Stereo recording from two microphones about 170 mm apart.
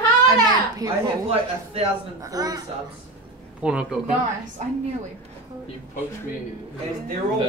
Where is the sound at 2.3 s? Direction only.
20° right (ahead or behind).